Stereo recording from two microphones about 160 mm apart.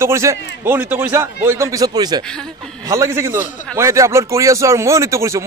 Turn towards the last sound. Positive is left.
turn(degrees=-20)  # may be behind; listen again after turning